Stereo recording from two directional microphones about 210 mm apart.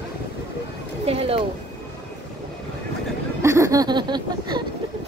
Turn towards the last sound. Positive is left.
turn(degrees=-20)  # may be behind; listen again after turning